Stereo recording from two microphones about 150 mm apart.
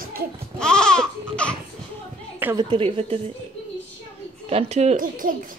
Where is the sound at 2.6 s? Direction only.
35° right (ahead or behind).